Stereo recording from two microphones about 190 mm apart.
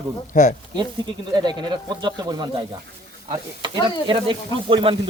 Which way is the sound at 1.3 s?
20° right (ahead or behind).